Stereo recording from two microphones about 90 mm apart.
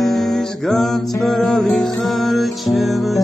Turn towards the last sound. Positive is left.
turn(degrees=0)  # may be behind; listen again after turning